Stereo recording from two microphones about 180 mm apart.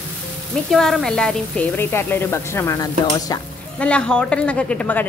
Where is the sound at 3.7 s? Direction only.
5° left (ahead or behind).